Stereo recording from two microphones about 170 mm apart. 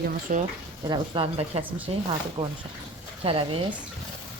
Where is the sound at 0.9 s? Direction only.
30° right (ahead or behind).